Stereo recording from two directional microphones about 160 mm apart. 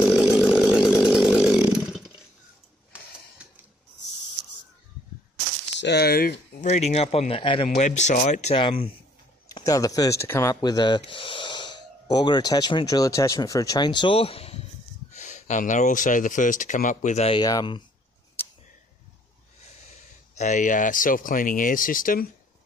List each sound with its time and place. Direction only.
0.0 s chainsaw: centre (ahead or behind)
2.9 s a sound: 5° right (ahead or behind)
5.8 s a sound: 90° left; by 6.7 s 65° left (ahead or behind)
6.7 s speech: 45° left (ahead or behind)
7.7 s speech: 45° left (ahead or behind)
8.5 s speech: 35° left (ahead or behind)
9.5 s speech: 20° left (ahead or behind); by 17.4 s 40° left (ahead or behind)
17.4 s speech: 25° left (ahead or behind)
20.3 s speech: 50° left (ahead or behind)